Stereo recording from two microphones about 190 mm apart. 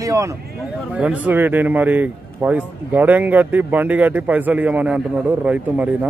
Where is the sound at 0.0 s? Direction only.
15° right (ahead or behind).